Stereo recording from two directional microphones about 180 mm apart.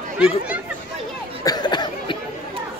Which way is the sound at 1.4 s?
25° left (ahead or behind).